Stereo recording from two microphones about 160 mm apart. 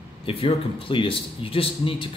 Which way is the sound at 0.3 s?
35° left (ahead or behind).